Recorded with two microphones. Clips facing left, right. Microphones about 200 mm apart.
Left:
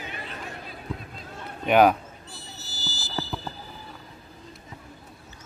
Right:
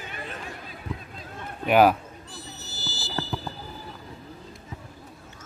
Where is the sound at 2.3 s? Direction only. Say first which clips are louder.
Right 2 dB; 35° left (ahead or behind).